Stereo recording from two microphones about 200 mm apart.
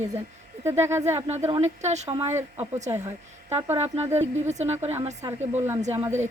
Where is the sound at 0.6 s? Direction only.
15° right (ahead or behind).